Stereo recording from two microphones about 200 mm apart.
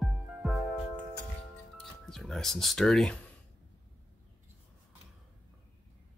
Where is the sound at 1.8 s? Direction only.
Centre (ahead or behind).